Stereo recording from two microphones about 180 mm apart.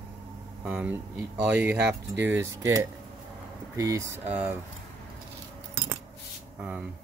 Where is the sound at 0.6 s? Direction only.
10° right (ahead or behind).